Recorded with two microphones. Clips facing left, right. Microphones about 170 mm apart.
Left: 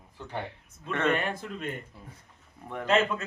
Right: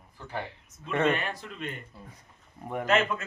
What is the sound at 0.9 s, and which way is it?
Speech, 10° right (ahead or behind).